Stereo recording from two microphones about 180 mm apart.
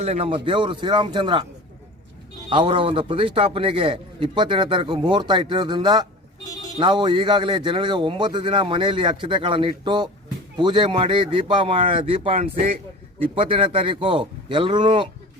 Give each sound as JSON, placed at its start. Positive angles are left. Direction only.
{"t": 0.0, "sound": "a man's voice", "side_deg": -35}
{"t": 2.5, "sound": "a man's voice", "side_deg": -30}